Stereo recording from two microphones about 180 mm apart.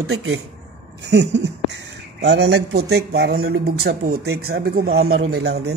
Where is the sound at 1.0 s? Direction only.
70° right (ahead or behind).